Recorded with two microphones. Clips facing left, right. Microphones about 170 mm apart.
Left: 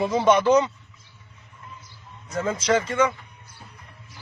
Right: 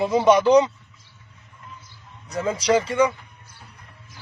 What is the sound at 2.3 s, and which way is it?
Speech, 15° right (ahead or behind).